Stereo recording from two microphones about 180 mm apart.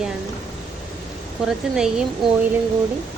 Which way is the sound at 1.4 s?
5° right (ahead or behind).